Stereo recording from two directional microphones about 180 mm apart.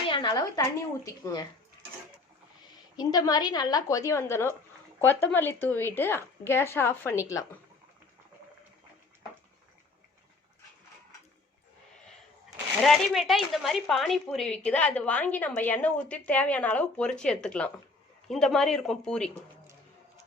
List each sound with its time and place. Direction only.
0.1 s a woman's voice: 25° left (ahead or behind)
2.9 s a woman's voice: 20° left (ahead or behind)
12.0 s speech: centre (ahead or behind)